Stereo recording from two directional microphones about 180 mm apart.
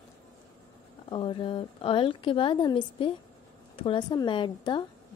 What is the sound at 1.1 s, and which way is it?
A woman's voice, 30° left (ahead or behind).